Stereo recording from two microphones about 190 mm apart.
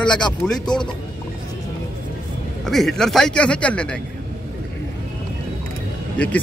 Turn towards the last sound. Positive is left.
turn(degrees=5)  # may be behind; listen again after turning